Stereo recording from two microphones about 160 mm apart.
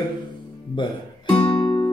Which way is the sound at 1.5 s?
30° left (ahead or behind).